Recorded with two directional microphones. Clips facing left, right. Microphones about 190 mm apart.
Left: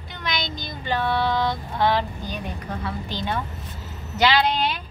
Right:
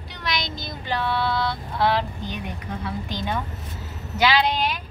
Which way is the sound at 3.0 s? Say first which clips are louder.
Even; 15° right (ahead or behind).